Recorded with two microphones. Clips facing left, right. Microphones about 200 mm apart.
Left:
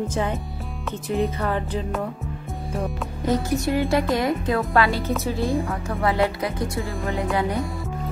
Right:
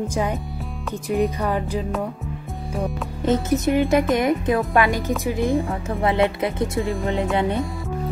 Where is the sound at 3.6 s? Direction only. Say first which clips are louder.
Right 3 dB; 20° right (ahead or behind).